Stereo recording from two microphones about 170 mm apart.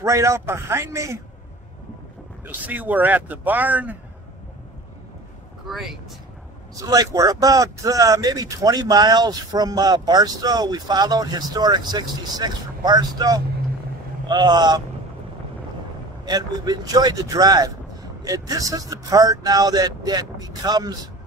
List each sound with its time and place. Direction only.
0.0 s speech: 20° right (ahead or behind)
2.4 s speech: 10° right (ahead or behind)
5.7 s speech: centre (ahead or behind)
6.8 s speech: 20° right (ahead or behind)
16.3 s speech: 25° right (ahead or behind)